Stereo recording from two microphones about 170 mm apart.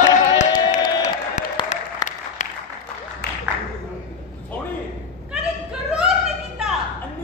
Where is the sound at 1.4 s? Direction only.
45° left (ahead or behind).